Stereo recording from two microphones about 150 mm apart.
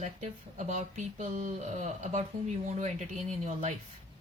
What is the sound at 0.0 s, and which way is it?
Speech, 50° right (ahead or behind).